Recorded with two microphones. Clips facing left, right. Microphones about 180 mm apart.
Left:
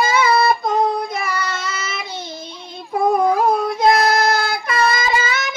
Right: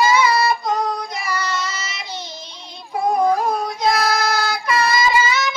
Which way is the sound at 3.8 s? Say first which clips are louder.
Left 4 dB; 55° left (ahead or behind).